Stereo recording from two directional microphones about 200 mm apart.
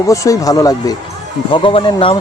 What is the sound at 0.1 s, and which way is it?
Speech, 15° left (ahead or behind).